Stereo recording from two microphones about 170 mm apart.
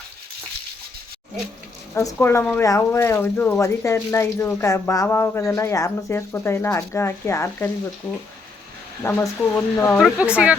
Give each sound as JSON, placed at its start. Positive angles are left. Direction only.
{"t": 2.1, "sound": "speech", "side_deg": 10}
{"t": 9.0, "sound": "speech", "side_deg": 15}
{"t": 10.0, "sound": "speech", "side_deg": -5}